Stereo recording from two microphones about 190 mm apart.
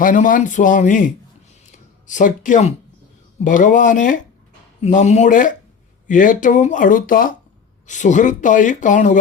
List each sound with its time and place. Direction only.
0.0 s speech: 45° left (ahead or behind)